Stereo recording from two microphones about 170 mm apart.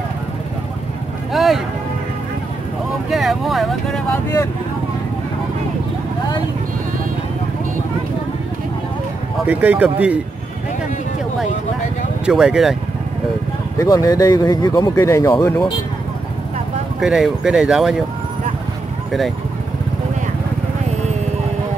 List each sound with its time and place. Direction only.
1.3 s boat: centre (ahead or behind)
3.1 s speech: centre (ahead or behind)
9.5 s speech: 10° right (ahead or behind)
12.3 s speech: 5° right (ahead or behind)
13.7 s speech: 20° left (ahead or behind)
17.0 s speech: 5° right (ahead or behind)